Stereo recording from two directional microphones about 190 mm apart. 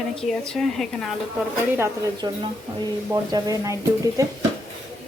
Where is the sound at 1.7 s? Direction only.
15° right (ahead or behind).